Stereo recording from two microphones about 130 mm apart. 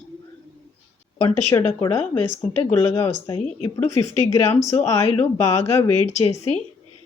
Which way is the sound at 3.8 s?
55° left (ahead or behind).